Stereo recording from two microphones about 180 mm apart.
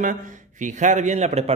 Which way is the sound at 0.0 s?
45° right (ahead or behind).